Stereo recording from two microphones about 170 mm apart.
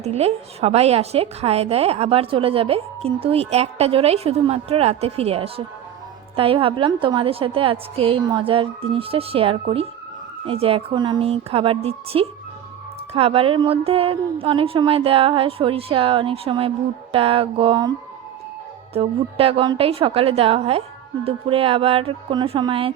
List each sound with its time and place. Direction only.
0.0 s a woman's voice: 40° right (ahead or behind)
18.9 s a woman's voice: 35° right (ahead or behind)